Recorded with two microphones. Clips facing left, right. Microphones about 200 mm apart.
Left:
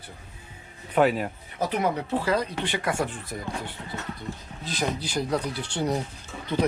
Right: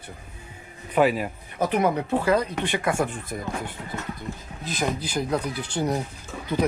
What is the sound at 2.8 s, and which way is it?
Speech, 25° right (ahead or behind).